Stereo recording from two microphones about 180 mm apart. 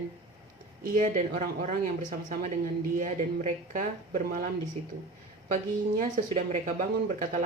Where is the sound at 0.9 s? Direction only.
45° right (ahead or behind).